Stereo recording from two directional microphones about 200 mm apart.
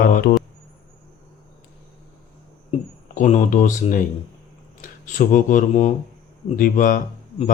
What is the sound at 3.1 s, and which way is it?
Speech, 40° left (ahead or behind).